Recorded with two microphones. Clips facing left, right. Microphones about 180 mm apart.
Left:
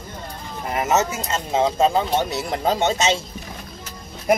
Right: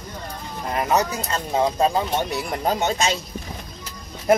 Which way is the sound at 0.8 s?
25° left (ahead or behind).